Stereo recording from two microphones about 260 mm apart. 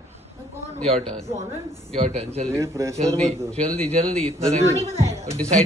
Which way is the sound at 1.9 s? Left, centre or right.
Right.